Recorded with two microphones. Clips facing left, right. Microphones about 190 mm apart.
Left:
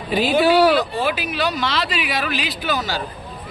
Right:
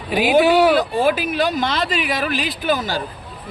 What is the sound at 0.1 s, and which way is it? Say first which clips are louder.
Speech: right 2 dB; 10° right (ahead or behind).